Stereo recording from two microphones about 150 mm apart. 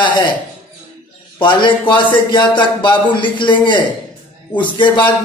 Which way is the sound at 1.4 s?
30° left (ahead or behind).